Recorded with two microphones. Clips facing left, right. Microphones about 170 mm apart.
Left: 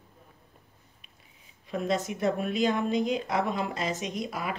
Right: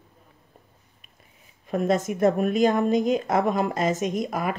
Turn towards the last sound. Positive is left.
turn(degrees=-50)  # may be behind; listen again after turning